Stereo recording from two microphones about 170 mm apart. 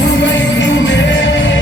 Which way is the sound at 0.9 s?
90° left.